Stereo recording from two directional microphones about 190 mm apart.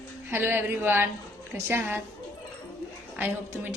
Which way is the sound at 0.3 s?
10° right (ahead or behind).